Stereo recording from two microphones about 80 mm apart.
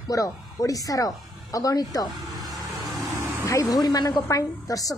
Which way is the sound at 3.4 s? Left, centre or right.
Left.